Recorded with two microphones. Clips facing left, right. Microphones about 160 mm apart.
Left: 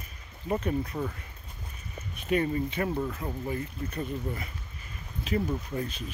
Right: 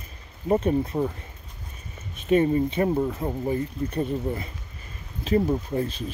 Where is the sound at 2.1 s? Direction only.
25° right (ahead or behind).